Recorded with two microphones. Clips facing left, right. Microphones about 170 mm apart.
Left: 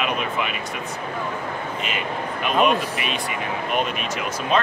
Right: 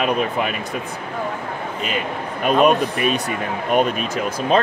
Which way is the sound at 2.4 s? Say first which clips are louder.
Right 5 dB; 40° right (ahead or behind).